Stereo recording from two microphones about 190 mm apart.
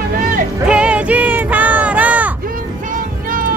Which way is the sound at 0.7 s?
5° right (ahead or behind).